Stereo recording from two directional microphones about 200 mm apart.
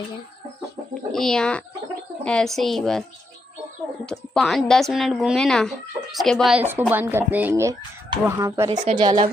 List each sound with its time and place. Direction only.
1.1 s a woman's voice: 5° left (ahead or behind)
4.0 s a woman's voice: centre (ahead or behind); by 9.3 s 25° right (ahead or behind)